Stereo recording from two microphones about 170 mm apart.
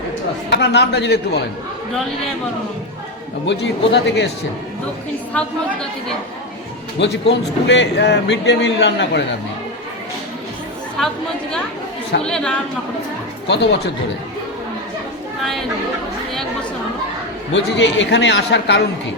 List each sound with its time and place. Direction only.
0.5 s a man's voice: 85° left
3.4 s a man's voice: 90° left
7.0 s a man's voice: 90° left
11.0 s speech: centre (ahead or behind)
12.2 s speech: 5° left (ahead or behind)
13.5 s a man's voice: 80° left
17.5 s a man's voice: 90° left